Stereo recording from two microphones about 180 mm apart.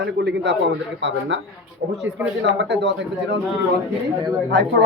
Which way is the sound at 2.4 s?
75° right (ahead or behind).